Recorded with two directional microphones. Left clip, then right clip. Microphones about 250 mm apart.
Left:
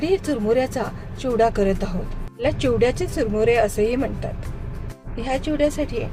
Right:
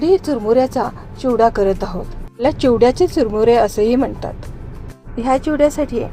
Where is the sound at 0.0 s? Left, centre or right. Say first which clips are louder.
Right 6 dB; centre.